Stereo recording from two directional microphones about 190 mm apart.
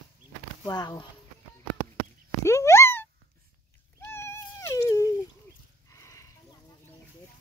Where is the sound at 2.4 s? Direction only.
15° left (ahead or behind).